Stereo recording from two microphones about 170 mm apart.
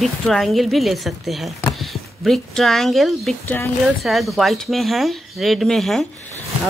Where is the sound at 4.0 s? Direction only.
Centre (ahead or behind).